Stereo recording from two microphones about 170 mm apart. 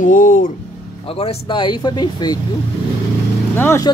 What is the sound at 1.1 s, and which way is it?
Speech, 35° left (ahead or behind).